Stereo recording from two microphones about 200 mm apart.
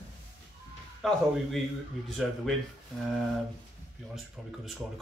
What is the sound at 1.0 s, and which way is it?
Speech, centre (ahead or behind).